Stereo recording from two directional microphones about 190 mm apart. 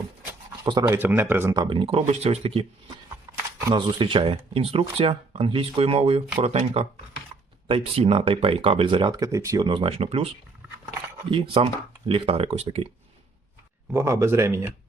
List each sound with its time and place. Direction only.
0.6 s speech: 20° right (ahead or behind)
1.5 s speech: 25° right (ahead or behind)
3.3 s shuffling cards: 10° right (ahead or behind)
3.7 s speech: 25° right (ahead or behind)
13.9 s speech: 15° right (ahead or behind)